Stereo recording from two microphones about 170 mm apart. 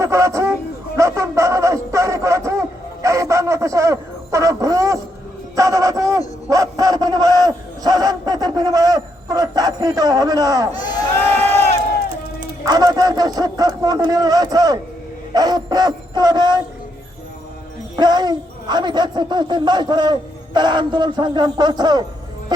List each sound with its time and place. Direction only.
0.0 s speech: 15° right (ahead or behind)
0.9 s a sound: 20° right (ahead or behind)
5.5 s a man's voice: 20° right (ahead or behind)
12.6 s a man's voice: 20° right (ahead or behind)
17.9 s a man's voice: 25° right (ahead or behind)